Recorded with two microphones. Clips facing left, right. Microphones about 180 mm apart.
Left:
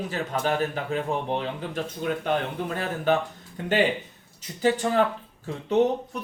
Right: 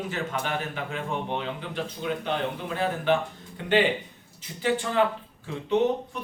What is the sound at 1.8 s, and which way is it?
Speech, 50° left (ahead or behind).